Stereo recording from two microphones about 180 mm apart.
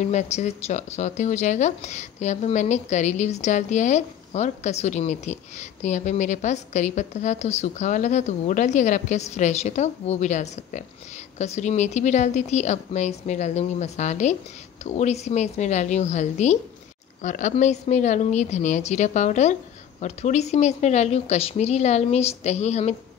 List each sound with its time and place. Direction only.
0.1 s speech: 40° left (ahead or behind)